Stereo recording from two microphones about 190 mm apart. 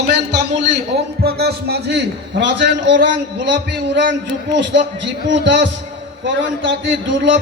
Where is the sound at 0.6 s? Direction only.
65° right (ahead or behind).